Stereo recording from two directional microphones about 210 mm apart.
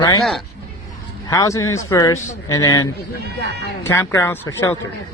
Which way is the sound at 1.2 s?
15° left (ahead or behind).